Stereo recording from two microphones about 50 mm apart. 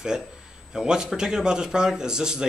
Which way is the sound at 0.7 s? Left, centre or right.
Centre.